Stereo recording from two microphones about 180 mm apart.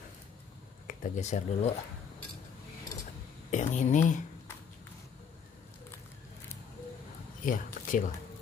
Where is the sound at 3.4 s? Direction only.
45° left (ahead or behind).